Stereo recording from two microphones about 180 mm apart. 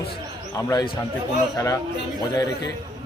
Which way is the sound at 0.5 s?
20° left (ahead or behind).